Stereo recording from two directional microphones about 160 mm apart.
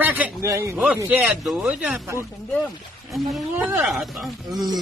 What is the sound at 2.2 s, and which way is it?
Speech, 5° left (ahead or behind).